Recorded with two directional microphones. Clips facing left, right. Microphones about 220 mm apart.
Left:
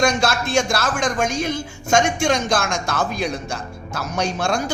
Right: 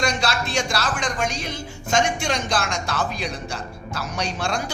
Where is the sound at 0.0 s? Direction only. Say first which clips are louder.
Left 5 dB; 45° left (ahead or behind).